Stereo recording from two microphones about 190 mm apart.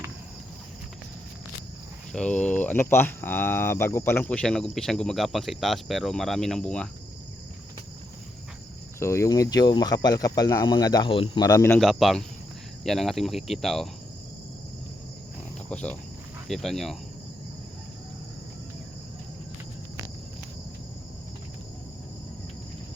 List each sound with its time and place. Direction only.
2.1 s speech: 5° left (ahead or behind)
9.0 s speech: 15° left (ahead or behind)
11.8 s speech: centre (ahead or behind)
15.7 s speech: 5° left (ahead or behind)